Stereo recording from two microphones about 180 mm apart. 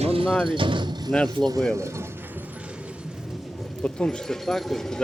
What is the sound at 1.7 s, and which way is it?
Clip-clop, 15° right (ahead or behind).